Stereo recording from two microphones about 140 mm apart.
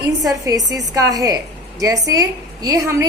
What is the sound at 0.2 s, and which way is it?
A woman's voice, 25° right (ahead or behind).